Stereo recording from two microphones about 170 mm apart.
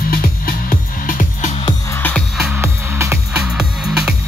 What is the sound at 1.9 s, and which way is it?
Music, 10° left (ahead or behind).